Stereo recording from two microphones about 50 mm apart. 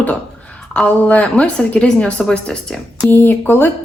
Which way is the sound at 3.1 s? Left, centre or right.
Left.